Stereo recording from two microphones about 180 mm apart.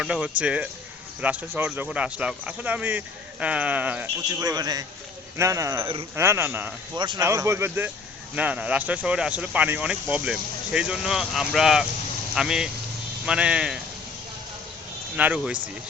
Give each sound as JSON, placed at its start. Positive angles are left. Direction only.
{"t": 0.0, "sound": "speech", "side_deg": -5}
{"t": 4.4, "sound": "a man's voice", "side_deg": -20}
{"t": 6.9, "sound": "a man's voice", "side_deg": -25}
{"t": 7.2, "sound": "speech", "side_deg": -15}
{"t": 15.1, "sound": "speech", "side_deg": -10}